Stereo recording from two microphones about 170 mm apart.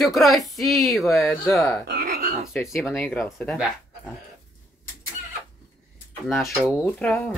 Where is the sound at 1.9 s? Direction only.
60° right (ahead or behind).